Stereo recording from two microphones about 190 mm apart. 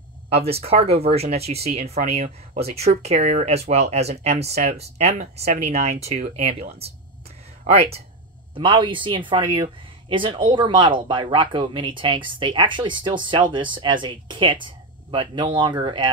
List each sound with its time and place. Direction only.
0.4 s speech: 30° right (ahead or behind)